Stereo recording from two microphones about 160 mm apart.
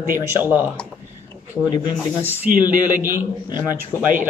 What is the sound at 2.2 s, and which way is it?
Speech, 10° right (ahead or behind).